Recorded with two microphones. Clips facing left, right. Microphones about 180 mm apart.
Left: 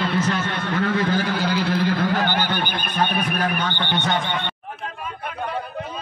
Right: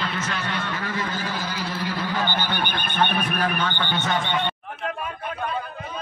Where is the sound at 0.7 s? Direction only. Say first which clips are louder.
Left 8 dB; 60° left (ahead or behind).